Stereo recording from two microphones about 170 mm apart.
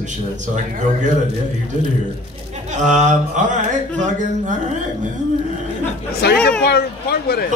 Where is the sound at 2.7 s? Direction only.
45° right (ahead or behind).